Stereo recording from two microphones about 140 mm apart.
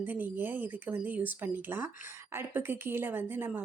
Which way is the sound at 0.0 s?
15° right (ahead or behind).